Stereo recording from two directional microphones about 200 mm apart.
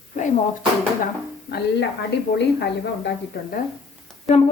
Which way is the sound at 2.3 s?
60° left (ahead or behind).